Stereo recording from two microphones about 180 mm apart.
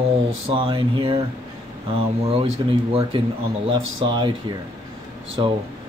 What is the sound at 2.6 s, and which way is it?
Speech, 25° right (ahead or behind).